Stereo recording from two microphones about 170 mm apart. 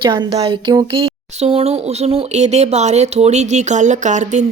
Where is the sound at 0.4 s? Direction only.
25° right (ahead or behind).